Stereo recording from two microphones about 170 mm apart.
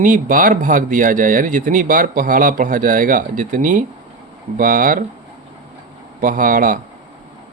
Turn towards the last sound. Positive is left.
turn(degrees=-50)  # may be behind; listen again after turning